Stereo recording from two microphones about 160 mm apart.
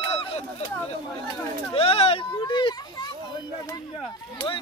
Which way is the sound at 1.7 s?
40° left (ahead or behind).